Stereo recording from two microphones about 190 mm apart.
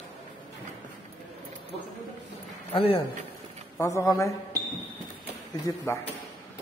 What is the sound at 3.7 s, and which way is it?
Speech, 15° left (ahead or behind).